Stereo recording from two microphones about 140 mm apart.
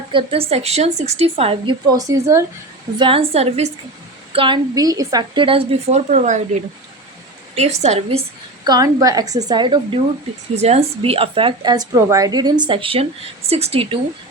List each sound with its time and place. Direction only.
0.1 s a woman's voice: 40° right (ahead or behind)
1.9 s a woman's voice: 25° right (ahead or behind)
3.0 s a woman's voice: 40° right (ahead or behind)
4.3 s a woman's voice: 40° right (ahead or behind)
4.7 s a woman's voice: 25° right (ahead or behind); by 6.0 s 40° right (ahead or behind)
6.1 s a woman's voice: 60° right (ahead or behind)
8.6 s a woman's voice: 25° right (ahead or behind)
10.5 s speech: 50° right (ahead or behind)